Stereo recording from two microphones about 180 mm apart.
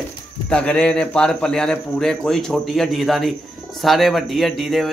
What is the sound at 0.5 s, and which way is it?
Speech, 5° left (ahead or behind).